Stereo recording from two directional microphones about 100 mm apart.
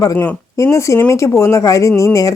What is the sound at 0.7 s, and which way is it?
Speech, 30° left (ahead or behind).